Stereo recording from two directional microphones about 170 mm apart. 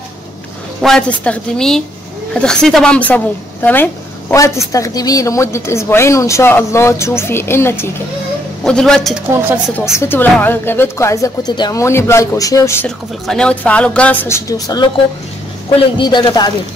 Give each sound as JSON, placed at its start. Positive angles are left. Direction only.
{"t": 0.8, "sound": "a woman's voice", "side_deg": 5}
{"t": 8.6, "sound": "a woman's voice", "side_deg": 5}
{"t": 9.8, "sound": "a woman's voice", "side_deg": 15}
{"t": 12.8, "sound": "a woman's voice", "side_deg": 5}